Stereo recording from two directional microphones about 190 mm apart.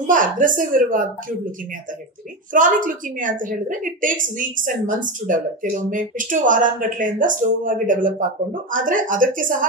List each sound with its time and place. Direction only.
0.0 s a woman's voice: 45° right (ahead or behind)
2.5 s a woman's voice: 45° right (ahead or behind)